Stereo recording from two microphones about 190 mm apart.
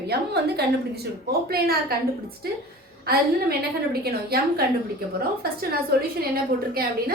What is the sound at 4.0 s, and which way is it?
Speech, 55° right (ahead or behind).